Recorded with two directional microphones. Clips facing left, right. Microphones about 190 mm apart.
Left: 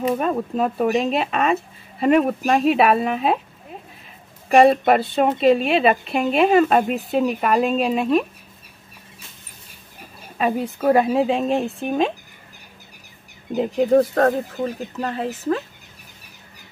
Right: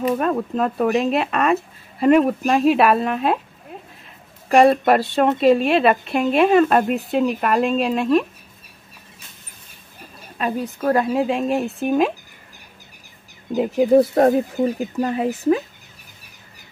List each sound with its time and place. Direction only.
0.2 s speech: 5° left (ahead or behind)
4.5 s speech: centre (ahead or behind)
10.4 s speech: 5° left (ahead or behind)
11.2 s a woman's voice: 30° left (ahead or behind)
11.8 s speech: 5° right (ahead or behind)
13.6 s speech: 5° right (ahead or behind)